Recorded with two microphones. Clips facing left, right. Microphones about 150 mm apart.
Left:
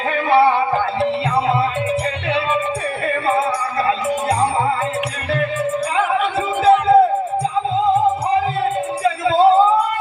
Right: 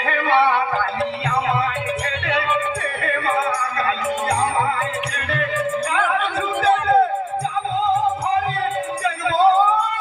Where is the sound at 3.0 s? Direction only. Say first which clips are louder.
Left 3 dB; 25° left (ahead or behind).